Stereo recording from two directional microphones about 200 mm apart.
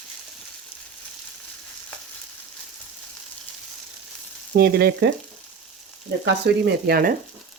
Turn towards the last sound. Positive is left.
turn(degrees=-50)  # may be behind; listen again after turning